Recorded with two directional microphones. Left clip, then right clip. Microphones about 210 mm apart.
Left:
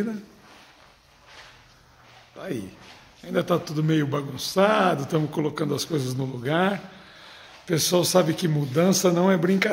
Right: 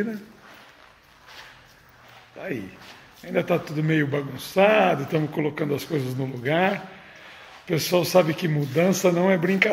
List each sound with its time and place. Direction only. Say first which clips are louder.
2.3 s speech: right 1 dB; 15° left (ahead or behind)